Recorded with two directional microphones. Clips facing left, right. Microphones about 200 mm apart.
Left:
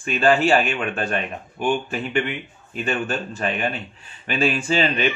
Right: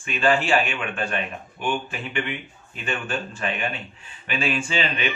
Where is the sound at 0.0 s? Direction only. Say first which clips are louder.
Left 4 dB; 40° left (ahead or behind).